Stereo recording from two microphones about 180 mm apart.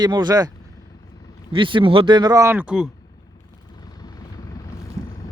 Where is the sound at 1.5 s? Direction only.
30° right (ahead or behind); by 2.9 s 5° right (ahead or behind).